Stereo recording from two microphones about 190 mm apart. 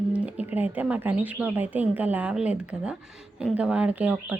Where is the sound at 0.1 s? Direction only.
5° right (ahead or behind).